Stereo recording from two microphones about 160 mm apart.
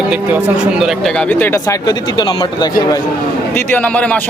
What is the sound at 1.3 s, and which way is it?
Speech, 10° left (ahead or behind).